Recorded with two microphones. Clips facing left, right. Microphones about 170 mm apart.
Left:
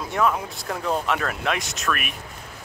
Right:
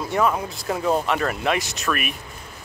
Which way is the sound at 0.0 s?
Centre (ahead or behind).